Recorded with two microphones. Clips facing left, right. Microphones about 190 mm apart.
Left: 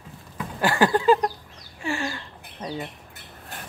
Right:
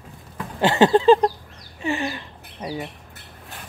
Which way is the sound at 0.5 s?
25° right (ahead or behind).